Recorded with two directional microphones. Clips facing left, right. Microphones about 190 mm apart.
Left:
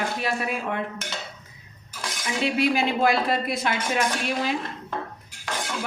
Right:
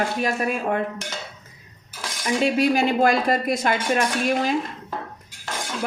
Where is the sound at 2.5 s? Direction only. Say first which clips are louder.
Right 1 dB; 45° right (ahead or behind).